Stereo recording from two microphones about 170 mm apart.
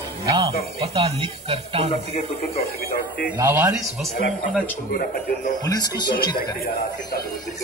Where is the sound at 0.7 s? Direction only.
35° right (ahead or behind).